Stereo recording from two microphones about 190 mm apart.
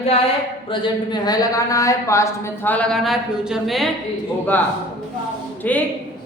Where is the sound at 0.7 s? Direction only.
25° left (ahead or behind); by 3.8 s centre (ahead or behind).